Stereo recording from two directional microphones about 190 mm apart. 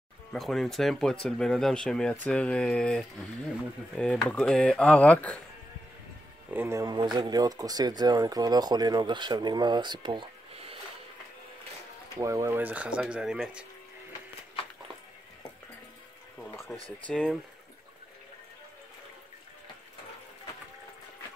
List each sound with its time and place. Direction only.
0.3 s speech: centre (ahead or behind)
6.5 s speech: 15° right (ahead or behind)
12.2 s speech: 15° right (ahead or behind)
16.3 s a sound: 15° left (ahead or behind)
17.1 s speech: 5° left (ahead or behind)